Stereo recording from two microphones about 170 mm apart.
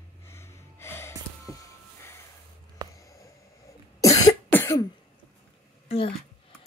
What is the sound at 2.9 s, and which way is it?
Cough, 20° left (ahead or behind).